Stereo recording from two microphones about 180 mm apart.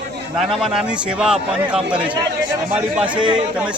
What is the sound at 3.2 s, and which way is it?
Speech, 25° right (ahead or behind).